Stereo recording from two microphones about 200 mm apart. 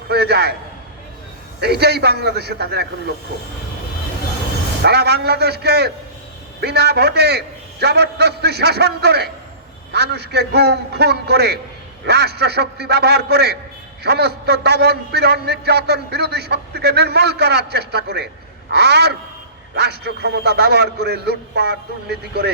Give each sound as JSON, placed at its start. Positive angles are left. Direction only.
{"t": 0.1, "sound": "a sound", "side_deg": -55}
{"t": 1.6, "sound": "a man's voice", "side_deg": -55}
{"t": 4.8, "sound": "a man's voice", "side_deg": -55}